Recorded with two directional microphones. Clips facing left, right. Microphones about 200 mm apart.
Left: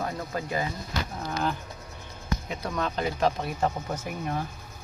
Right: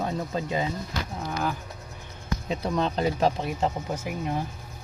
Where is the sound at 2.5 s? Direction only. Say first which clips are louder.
Right 6 dB; 30° right (ahead or behind).